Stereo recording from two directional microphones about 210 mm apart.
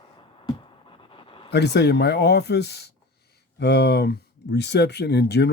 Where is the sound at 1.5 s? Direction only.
55° left (ahead or behind).